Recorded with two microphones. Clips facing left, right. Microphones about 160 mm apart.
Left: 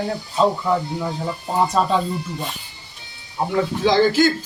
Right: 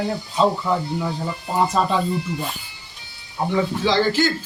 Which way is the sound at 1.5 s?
Centre (ahead or behind).